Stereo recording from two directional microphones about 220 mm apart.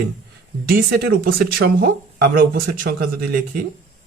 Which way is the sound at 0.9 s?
40° right (ahead or behind).